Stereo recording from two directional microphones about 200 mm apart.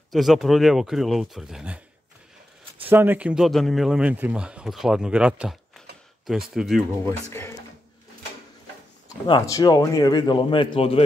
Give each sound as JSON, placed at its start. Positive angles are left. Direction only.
{"t": 0.1, "sound": "speech", "side_deg": 0}
{"t": 2.8, "sound": "speech", "side_deg": -10}
{"t": 9.3, "sound": "a man's voice", "side_deg": 20}